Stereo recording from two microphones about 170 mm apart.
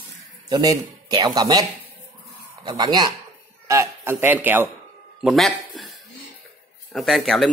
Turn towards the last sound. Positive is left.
turn(degrees=0)  # may be behind; listen again after turning